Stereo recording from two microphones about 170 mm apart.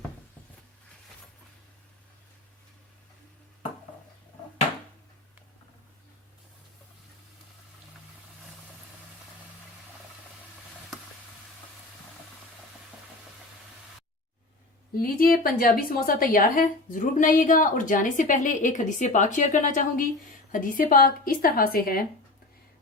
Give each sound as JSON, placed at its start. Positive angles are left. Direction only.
{"t": 15.0, "sound": "a woman's voice", "side_deg": 60}